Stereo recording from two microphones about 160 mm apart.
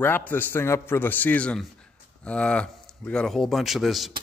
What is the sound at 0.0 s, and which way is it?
A man's voice, 10° left (ahead or behind).